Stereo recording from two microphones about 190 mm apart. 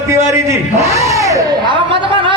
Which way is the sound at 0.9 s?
15° right (ahead or behind).